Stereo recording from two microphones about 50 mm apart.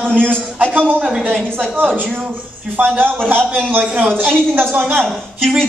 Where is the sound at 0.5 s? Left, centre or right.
Right.